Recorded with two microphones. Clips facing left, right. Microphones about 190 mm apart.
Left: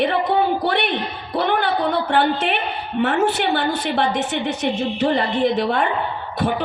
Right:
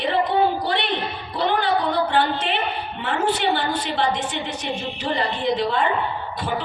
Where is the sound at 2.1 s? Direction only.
60° left (ahead or behind).